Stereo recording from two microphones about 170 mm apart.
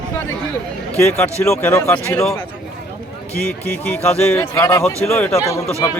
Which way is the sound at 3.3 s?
5° left (ahead or behind).